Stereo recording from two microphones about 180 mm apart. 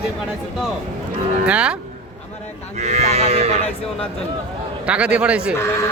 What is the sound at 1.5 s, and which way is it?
Speech, 5° right (ahead or behind).